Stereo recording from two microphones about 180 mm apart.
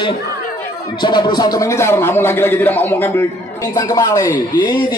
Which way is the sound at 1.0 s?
25° left (ahead or behind).